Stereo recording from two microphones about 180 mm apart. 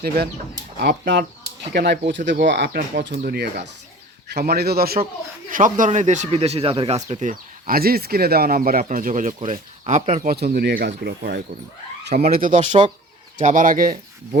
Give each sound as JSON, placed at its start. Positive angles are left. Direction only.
{"t": 0.8, "sound": "speech", "side_deg": -70}
{"t": 2.5, "sound": "speech", "side_deg": -65}
{"t": 3.0, "sound": "speech", "side_deg": -65}
{"t": 5.5, "sound": "speech", "side_deg": -45}
{"t": 10.3, "sound": "speech", "side_deg": -60}